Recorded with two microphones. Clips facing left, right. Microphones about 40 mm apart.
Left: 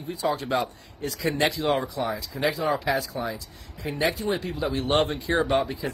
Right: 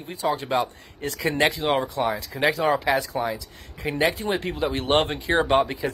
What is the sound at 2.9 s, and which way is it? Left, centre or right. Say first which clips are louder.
Speech: right 3 dB; right.